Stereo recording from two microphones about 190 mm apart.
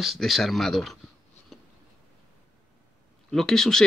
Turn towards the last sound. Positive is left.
turn(degrees=5)  # may be behind; listen again after turning